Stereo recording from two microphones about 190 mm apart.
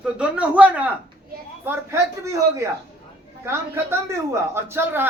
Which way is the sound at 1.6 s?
15° right (ahead or behind).